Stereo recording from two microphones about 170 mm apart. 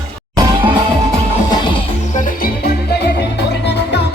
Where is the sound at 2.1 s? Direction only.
55° left (ahead or behind).